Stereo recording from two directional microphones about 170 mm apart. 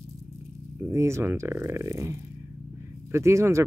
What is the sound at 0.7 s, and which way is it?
Speech, 15° right (ahead or behind).